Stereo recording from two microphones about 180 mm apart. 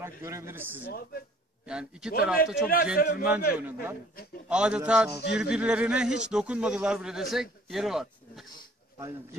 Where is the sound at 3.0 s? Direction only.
55° left (ahead or behind).